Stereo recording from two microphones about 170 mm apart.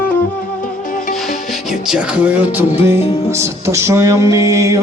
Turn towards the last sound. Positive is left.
turn(degrees=-20)  # may be behind; listen again after turning